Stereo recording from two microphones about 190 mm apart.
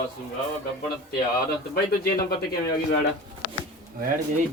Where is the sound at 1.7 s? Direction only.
50° left (ahead or behind).